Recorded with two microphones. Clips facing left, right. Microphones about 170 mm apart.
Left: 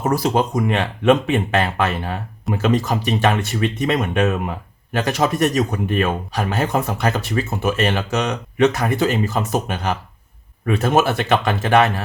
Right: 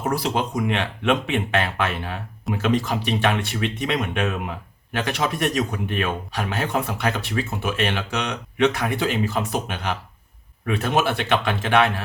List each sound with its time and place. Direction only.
0.0 s speech: 45° left (ahead or behind)